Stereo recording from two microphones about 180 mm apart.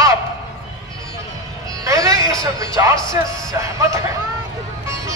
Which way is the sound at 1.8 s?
20° right (ahead or behind).